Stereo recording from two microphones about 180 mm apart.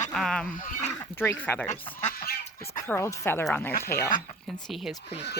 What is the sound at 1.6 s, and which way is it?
Speech, 40° left (ahead or behind).